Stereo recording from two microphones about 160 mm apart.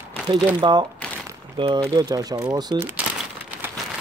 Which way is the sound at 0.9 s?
10° left (ahead or behind).